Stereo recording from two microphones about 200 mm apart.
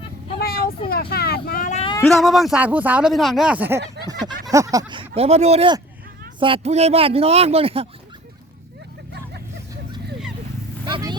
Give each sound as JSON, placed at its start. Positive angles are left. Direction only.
{"t": 0.3, "sound": "vehicle", "side_deg": 50}
{"t": 2.0, "sound": "speech", "side_deg": 5}
{"t": 4.0, "sound": "a sound", "side_deg": -55}
{"t": 4.4, "sound": "a man's voice", "side_deg": -15}
{"t": 10.8, "sound": "vehicle", "side_deg": -20}